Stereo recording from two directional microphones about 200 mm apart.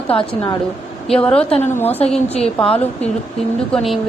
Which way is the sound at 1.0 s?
5° left (ahead or behind).